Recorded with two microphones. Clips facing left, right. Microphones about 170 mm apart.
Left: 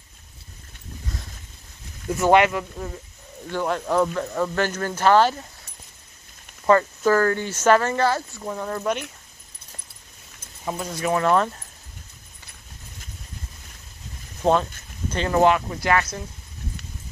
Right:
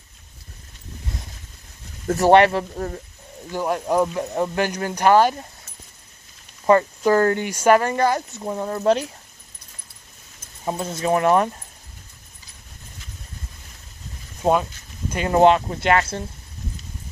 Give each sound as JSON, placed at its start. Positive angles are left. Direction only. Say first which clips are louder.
{"t": 2.0, "sound": "speech", "louder": "right 3 dB", "side_deg": -35}
{"t": 3.5, "sound": "speech", "louder": "right 1 dB", "side_deg": -10}
{"t": 6.6, "sound": "speech", "louder": "right 2 dB", "side_deg": -20}
{"t": 10.6, "sound": "speech", "louder": "right 2 dB", "side_deg": -25}
{"t": 14.4, "sound": "speech", "louder": "even", "side_deg": -10}
{"t": 15.2, "sound": "speech", "louder": "right 3 dB", "side_deg": -20}